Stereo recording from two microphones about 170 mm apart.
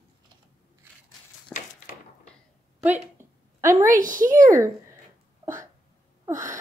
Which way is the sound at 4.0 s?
50° right (ahead or behind).